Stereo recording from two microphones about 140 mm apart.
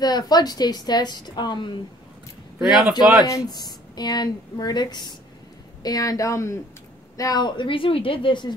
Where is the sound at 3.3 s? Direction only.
25° left (ahead or behind).